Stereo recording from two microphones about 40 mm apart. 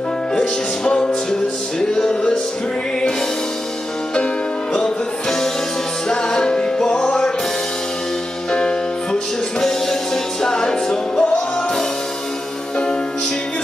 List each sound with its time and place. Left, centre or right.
0.4 s music: left
4.7 s music: centre
8.5 s music: left